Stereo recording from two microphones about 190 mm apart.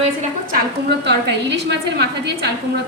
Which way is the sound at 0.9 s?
65° right (ahead or behind).